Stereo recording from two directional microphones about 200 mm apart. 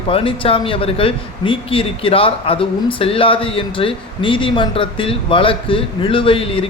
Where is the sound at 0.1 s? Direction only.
30° left (ahead or behind).